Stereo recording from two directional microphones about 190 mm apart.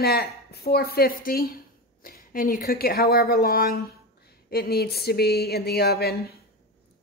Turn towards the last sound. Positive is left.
turn(degrees=55)  # may be behind; listen again after turning